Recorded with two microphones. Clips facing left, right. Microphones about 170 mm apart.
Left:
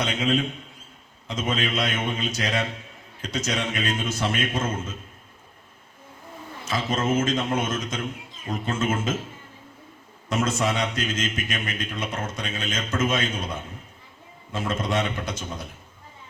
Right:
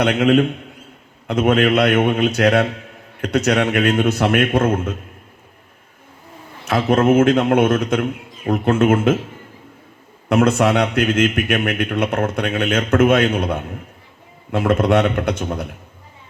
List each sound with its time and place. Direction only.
0.0 s a man's voice: 65° right (ahead or behind)
6.7 s a man's voice: 65° right (ahead or behind)
10.2 s a man's voice: 65° right (ahead or behind)